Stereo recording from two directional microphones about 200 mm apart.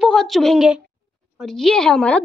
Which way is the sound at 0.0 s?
Centre (ahead or behind).